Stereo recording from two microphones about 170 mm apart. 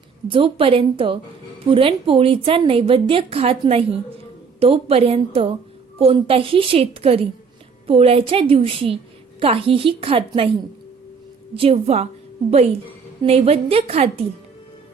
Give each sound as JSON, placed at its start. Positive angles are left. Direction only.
{"t": 0.3, "sound": "a woman's voice", "side_deg": -30}
{"t": 11.5, "sound": "a woman's voice", "side_deg": -35}
{"t": 13.2, "sound": "a woman's voice", "side_deg": -35}